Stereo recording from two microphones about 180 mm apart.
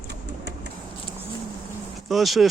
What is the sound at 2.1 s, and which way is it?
Speech, centre (ahead or behind).